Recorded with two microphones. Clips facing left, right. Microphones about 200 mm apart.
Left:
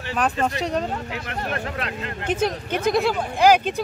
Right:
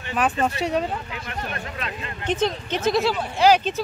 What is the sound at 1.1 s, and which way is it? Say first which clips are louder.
Speech: left 3 dB; 65° left (ahead or behind).